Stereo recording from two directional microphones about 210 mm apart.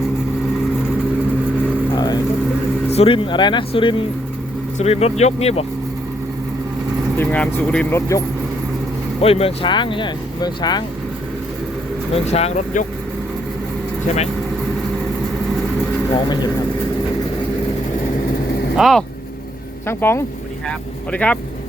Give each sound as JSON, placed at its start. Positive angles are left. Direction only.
{"t": 2.9, "sound": "speech", "side_deg": 25}
{"t": 7.2, "sound": "speech", "side_deg": 5}
{"t": 9.2, "sound": "speech", "side_deg": 30}
{"t": 12.1, "sound": "speech", "side_deg": 30}
{"t": 16.1, "sound": "speech", "side_deg": 20}
{"t": 18.8, "sound": "speech", "side_deg": 0}
{"t": 19.9, "sound": "speech", "side_deg": 10}